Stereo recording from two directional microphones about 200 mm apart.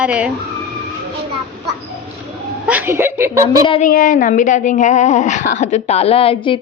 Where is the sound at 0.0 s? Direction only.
5° right (ahead or behind).